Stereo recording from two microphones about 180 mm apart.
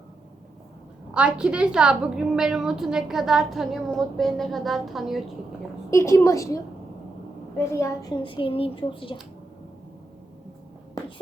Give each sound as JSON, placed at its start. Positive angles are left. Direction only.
{"t": 1.1, "sound": "a woman's voice", "side_deg": -5}
{"t": 5.9, "sound": "a woman's voice", "side_deg": 15}
{"t": 8.2, "sound": "speech", "side_deg": 30}